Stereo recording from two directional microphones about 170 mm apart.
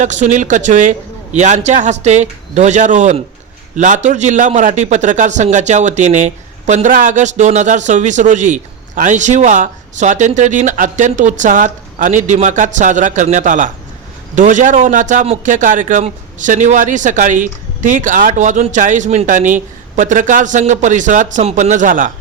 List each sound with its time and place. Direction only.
0.0 s a man's voice: 45° right (ahead or behind)